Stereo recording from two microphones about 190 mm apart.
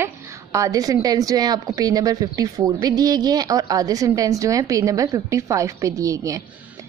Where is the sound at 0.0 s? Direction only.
15° right (ahead or behind).